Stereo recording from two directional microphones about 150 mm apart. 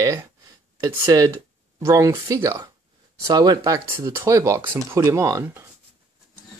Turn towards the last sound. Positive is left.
turn(degrees=-20)  # may be behind; listen again after turning